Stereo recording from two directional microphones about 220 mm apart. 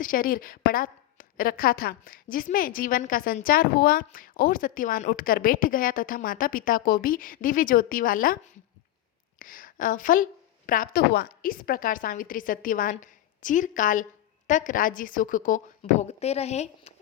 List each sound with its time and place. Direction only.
0.0 s a woman's voice: 40° left (ahead or behind)
9.4 s a woman's voice: 40° left (ahead or behind)